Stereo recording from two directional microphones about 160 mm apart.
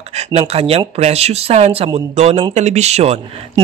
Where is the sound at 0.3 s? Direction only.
40° right (ahead or behind).